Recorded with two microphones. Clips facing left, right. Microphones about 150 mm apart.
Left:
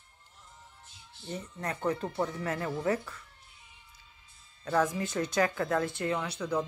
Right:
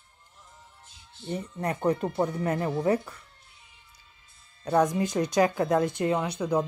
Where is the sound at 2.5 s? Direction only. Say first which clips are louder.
Right 5 dB; 20° right (ahead or behind).